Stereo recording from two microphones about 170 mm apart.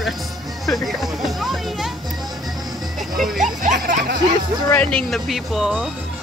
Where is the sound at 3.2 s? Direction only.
Centre (ahead or behind).